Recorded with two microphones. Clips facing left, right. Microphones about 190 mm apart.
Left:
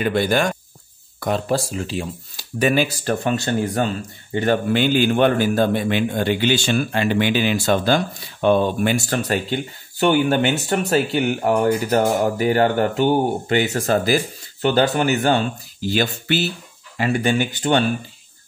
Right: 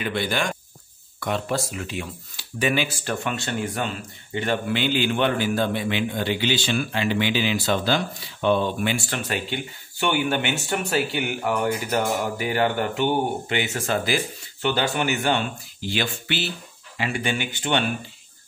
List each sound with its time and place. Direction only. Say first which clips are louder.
0.0 s speech: left 7 dB; 45° left (ahead or behind)